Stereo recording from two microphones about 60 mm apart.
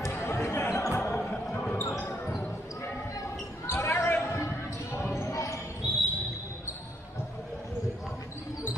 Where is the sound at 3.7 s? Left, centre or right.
Left.